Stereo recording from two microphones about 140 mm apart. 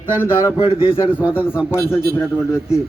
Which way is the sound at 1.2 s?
10° right (ahead or behind).